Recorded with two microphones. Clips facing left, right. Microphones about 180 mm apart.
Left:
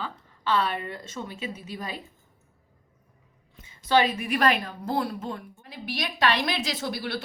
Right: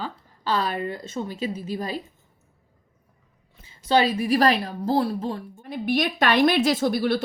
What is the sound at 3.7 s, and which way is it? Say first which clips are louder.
A woman's voice: right 2 dB; 30° right (ahead or behind).